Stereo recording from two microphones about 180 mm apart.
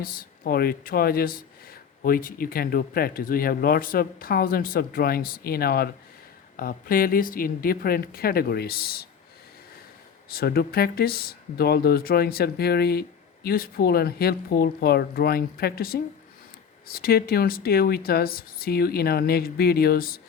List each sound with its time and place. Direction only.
0.0 s speech: 55° left (ahead or behind)
10.2 s speech: 55° left (ahead or behind)